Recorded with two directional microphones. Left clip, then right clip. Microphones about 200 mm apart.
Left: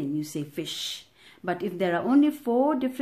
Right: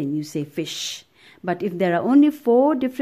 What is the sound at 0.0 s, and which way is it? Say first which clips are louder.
Speech: right 5 dB; 40° right (ahead or behind).